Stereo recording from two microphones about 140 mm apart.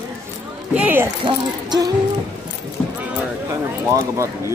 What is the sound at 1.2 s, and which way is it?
Speech, 30° right (ahead or behind).